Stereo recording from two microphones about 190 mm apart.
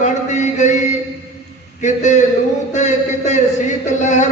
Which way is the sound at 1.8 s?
40° left (ahead or behind).